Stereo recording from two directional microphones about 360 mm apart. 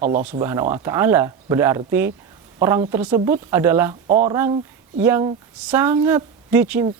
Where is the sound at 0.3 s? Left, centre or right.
Centre.